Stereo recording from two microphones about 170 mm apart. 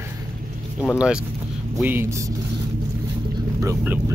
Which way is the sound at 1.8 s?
15° right (ahead or behind).